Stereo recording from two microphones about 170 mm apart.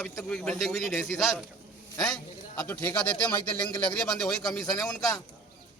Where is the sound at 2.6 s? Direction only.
10° left (ahead or behind).